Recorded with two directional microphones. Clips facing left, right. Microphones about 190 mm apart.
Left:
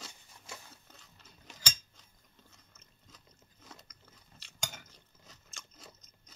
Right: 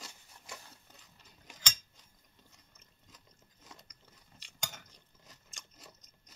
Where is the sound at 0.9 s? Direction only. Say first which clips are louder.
Left 2 dB; 15° right (ahead or behind).